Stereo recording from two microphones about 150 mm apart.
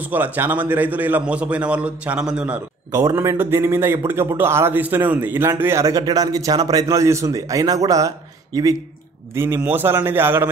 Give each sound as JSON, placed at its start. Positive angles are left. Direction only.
{"t": 0.1, "sound": "a man's voice", "side_deg": -10}
{"t": 2.9, "sound": "a man's voice", "side_deg": -15}
{"t": 9.3, "sound": "a man's voice", "side_deg": -15}